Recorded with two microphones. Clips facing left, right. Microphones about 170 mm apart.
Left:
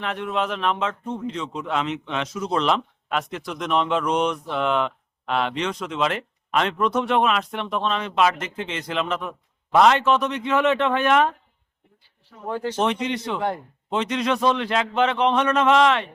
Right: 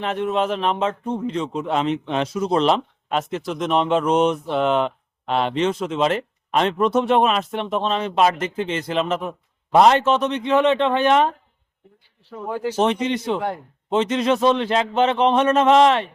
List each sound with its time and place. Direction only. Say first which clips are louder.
0.0 s speech: right 4 dB; 35° right (ahead or behind)
10.2 s speech: right 3 dB; 20° right (ahead or behind)
12.5 s speech: right 2 dB; 10° right (ahead or behind)
12.8 s speech: right 4 dB; 40° right (ahead or behind)